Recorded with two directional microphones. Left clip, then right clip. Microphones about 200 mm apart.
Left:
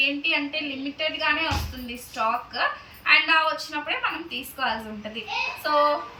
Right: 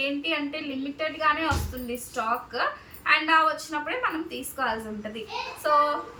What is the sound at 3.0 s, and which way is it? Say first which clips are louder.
A woman's voice: left 2 dB; 15° right (ahead or behind).